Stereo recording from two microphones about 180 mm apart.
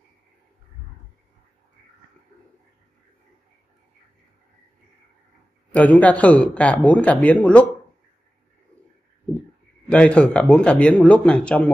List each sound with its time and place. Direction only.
5.7 s a man's voice: 10° left (ahead or behind)
9.8 s speech: 5° left (ahead or behind)